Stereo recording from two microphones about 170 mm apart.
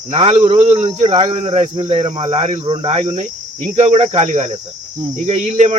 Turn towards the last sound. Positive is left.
turn(degrees=-40)  # may be behind; listen again after turning